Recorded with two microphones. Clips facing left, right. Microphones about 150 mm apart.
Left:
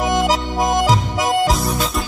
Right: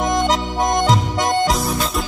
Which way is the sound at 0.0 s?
5° left (ahead or behind).